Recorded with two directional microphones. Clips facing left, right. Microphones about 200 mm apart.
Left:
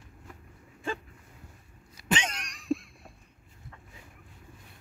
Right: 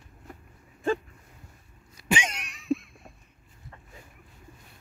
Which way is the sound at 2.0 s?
10° right (ahead or behind).